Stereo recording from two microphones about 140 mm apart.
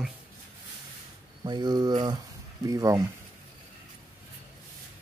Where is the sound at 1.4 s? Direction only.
30° right (ahead or behind).